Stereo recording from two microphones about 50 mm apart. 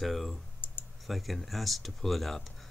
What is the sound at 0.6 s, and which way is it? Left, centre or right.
Typing, left.